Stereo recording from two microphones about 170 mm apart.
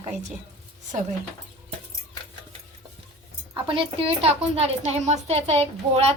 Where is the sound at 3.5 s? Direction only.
30° right (ahead or behind).